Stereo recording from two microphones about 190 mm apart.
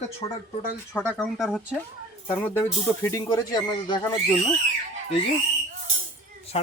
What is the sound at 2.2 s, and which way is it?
Speech, 10° left (ahead or behind).